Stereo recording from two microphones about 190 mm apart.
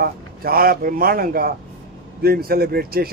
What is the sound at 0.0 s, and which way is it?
A man's voice, 50° right (ahead or behind).